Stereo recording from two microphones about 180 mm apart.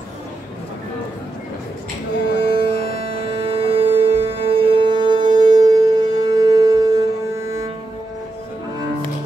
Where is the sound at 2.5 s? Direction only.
35° right (ahead or behind).